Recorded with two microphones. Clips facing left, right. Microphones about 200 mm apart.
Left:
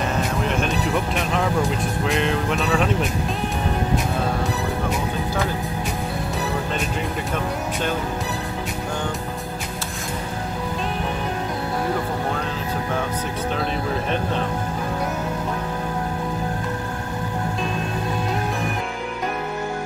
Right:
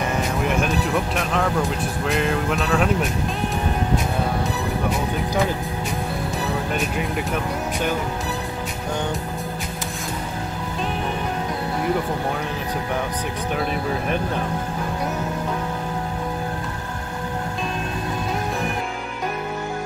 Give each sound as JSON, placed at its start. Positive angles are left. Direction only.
{"t": 0.6, "sound": "speech", "side_deg": 0}